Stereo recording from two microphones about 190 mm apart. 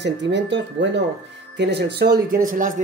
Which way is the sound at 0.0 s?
65° right (ahead or behind).